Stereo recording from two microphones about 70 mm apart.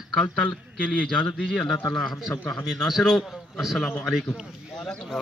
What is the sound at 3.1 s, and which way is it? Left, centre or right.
A man's voice, centre.